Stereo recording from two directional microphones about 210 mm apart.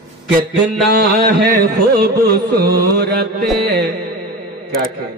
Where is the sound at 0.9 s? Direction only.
45° right (ahead or behind).